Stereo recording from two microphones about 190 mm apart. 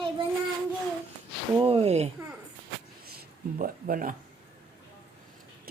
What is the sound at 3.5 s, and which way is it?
Speech, 45° right (ahead or behind).